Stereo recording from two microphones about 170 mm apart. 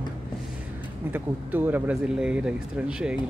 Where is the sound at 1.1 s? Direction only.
10° right (ahead or behind).